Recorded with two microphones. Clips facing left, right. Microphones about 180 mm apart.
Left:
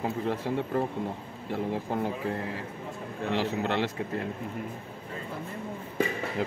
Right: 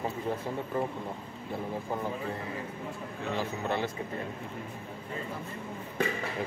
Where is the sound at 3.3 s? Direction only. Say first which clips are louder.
Left 4 dB; 85° left.